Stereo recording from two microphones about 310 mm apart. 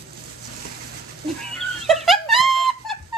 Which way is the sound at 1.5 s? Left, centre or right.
Centre.